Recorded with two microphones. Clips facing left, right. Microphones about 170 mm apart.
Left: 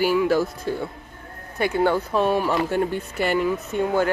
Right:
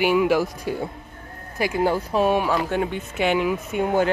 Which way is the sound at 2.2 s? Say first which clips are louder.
Right 2 dB; 10° right (ahead or behind).